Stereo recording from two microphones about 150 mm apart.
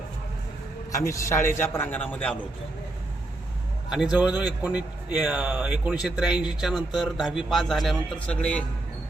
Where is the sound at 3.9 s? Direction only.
5° right (ahead or behind).